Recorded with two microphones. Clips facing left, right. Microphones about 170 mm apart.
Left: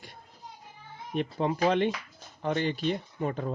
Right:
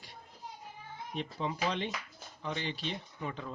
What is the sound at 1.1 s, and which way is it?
Speech, 55° left (ahead or behind).